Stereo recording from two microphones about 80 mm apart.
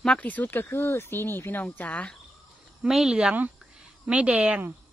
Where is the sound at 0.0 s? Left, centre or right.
Centre.